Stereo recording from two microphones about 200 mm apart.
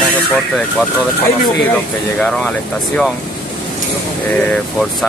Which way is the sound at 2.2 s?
5° left (ahead or behind).